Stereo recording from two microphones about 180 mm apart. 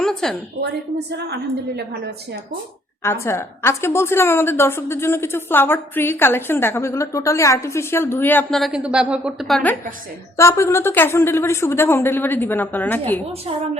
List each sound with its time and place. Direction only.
0.0 s a sound: 5° left (ahead or behind)
0.6 s a woman's voice: 70° right (ahead or behind)
3.0 s a woman's voice: 15° left (ahead or behind)
10.3 s a woman's voice: 15° left (ahead or behind)